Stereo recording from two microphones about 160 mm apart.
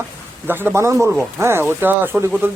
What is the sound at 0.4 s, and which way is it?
Speech, 15° right (ahead or behind).